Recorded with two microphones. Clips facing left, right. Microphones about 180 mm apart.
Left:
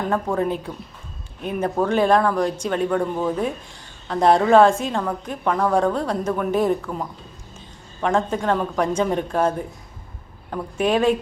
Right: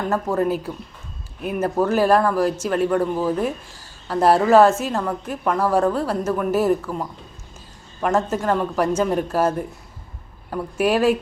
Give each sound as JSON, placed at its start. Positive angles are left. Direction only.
{"t": 0.1, "sound": "speech", "side_deg": -5}